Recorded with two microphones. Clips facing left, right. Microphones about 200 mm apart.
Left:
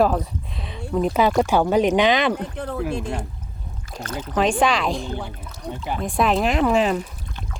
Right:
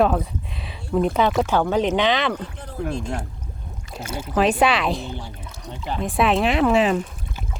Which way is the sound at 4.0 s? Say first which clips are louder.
Right 1 dB; 10° right (ahead or behind).